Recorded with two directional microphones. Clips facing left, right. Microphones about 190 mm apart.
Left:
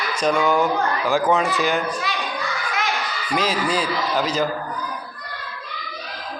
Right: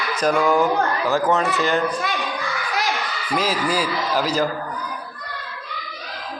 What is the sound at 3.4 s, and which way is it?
Speech, 5° right (ahead or behind).